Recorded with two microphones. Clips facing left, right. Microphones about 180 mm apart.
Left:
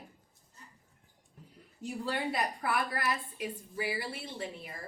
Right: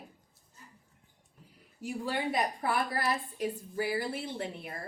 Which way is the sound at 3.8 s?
50° right (ahead or behind).